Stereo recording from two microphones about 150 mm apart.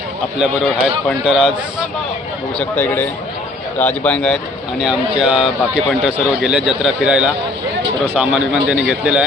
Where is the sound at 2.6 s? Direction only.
10° left (ahead or behind).